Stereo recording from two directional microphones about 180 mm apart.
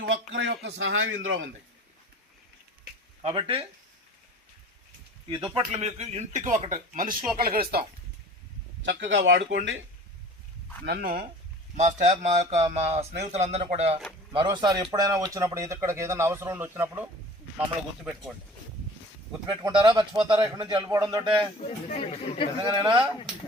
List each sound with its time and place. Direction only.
0.0 s speech: 90° right
3.2 s a man's voice: 30° right (ahead or behind)
5.3 s speech: 30° right (ahead or behind); by 7.9 s 55° right (ahead or behind)
8.8 s speech: 90° right
10.8 s speech: 60° right (ahead or behind)
11.8 s speech: 40° right (ahead or behind)
14.3 s a man's voice: 25° right (ahead or behind)
19.5 s a man's voice: 25° right (ahead or behind)
21.6 s speech: 40° left (ahead or behind)